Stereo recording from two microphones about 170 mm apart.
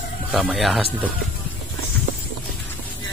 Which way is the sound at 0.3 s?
Centre (ahead or behind).